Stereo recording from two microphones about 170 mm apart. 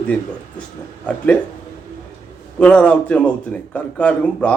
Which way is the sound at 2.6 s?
5° left (ahead or behind).